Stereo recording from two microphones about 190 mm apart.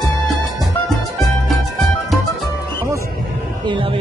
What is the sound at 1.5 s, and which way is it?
Music, centre (ahead or behind).